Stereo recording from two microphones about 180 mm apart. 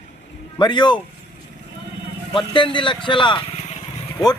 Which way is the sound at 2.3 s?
25° left (ahead or behind).